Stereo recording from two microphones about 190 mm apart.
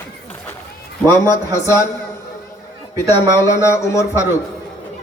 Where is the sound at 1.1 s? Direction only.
15° left (ahead or behind).